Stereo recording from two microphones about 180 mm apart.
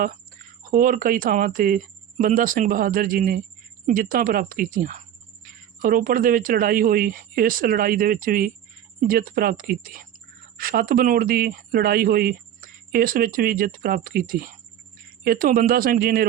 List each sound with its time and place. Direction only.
0.7 s speech: 50° right (ahead or behind)